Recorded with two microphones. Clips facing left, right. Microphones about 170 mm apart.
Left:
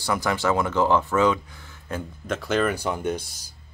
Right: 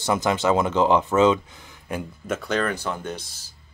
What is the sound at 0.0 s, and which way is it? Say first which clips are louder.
Speech: right 2 dB; 20° right (ahead or behind).